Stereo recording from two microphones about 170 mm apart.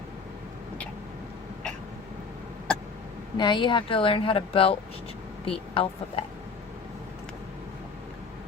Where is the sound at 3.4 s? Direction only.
25° left (ahead or behind).